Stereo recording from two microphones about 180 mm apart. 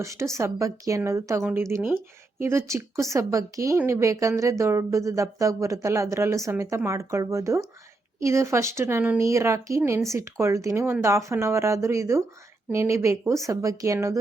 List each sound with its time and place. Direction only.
0.0 s a woman's voice: 15° right (ahead or behind)